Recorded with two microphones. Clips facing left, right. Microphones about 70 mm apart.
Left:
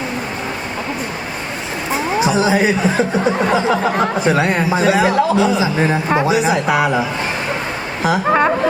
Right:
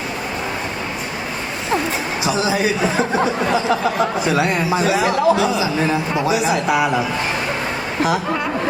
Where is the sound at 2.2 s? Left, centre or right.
Left.